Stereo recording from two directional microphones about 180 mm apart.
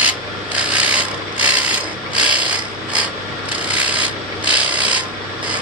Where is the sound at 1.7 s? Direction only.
5° right (ahead or behind).